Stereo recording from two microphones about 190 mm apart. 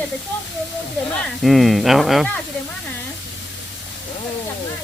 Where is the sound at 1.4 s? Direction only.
Centre (ahead or behind).